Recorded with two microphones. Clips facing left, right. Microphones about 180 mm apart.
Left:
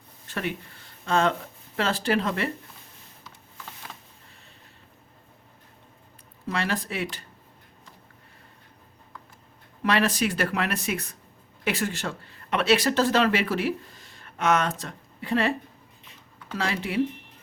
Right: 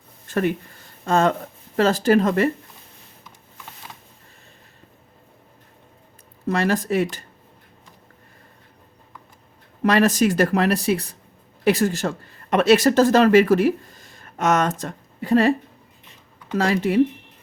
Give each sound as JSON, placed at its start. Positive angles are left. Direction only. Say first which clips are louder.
{"t": 0.3, "sound": "speech", "louder": "right 9 dB", "side_deg": -45}
{"t": 6.5, "sound": "speech", "louder": "right 8 dB", "side_deg": -45}
{"t": 9.8, "sound": "speech", "louder": "right 7 dB", "side_deg": -45}
{"t": 16.6, "sound": "speech", "louder": "right 9 dB", "side_deg": -45}